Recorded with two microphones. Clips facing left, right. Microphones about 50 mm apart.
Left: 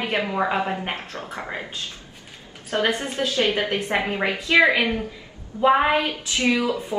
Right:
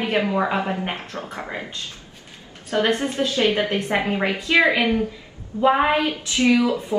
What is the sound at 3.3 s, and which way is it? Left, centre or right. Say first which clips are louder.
Speech: right 2 dB; right.